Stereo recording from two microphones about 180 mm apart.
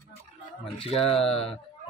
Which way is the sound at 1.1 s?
5° left (ahead or behind).